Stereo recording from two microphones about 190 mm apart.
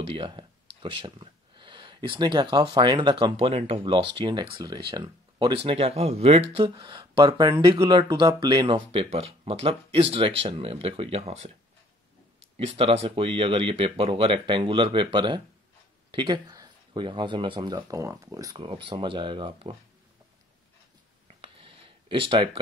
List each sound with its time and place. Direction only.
0.0 s speech: 30° right (ahead or behind)
12.5 s speech: 30° right (ahead or behind)
21.4 s a sound: 30° right (ahead or behind)